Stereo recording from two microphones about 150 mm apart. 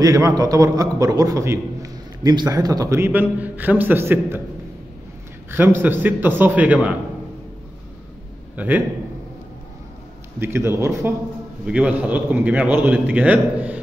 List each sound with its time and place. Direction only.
0.0 s a man's voice: 25° right (ahead or behind)
5.5 s a man's voice: 15° right (ahead or behind)
8.5 s a man's voice: 10° right (ahead or behind)
10.4 s a man's voice: 15° right (ahead or behind)